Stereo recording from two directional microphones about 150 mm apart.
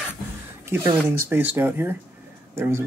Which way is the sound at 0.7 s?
15° right (ahead or behind).